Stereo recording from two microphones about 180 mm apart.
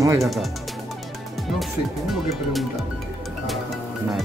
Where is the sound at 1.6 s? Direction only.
Centre (ahead or behind).